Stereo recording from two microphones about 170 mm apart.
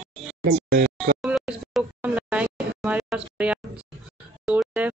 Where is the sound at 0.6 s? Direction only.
65° right (ahead or behind).